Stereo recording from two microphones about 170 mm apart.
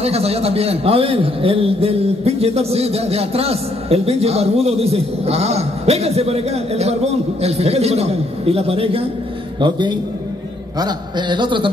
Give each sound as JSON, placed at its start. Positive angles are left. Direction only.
{"t": 0.0, "sound": "a man's voice", "side_deg": -35}